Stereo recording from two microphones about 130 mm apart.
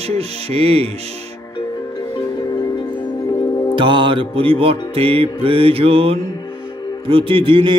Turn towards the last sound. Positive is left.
turn(degrees=-40)  # may be behind; listen again after turning